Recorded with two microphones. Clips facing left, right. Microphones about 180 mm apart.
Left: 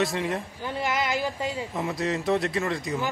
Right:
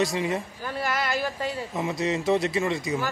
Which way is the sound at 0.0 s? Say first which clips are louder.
Right 1 dB; centre (ahead or behind).